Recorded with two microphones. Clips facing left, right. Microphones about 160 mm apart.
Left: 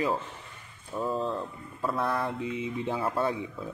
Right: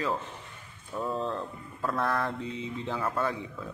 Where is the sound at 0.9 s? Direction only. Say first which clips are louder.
Left 2 dB; centre (ahead or behind); by 3.3 s 25° left (ahead or behind).